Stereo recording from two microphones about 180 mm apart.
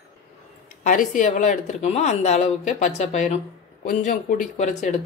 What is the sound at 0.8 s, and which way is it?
A woman's voice, 45° left (ahead or behind).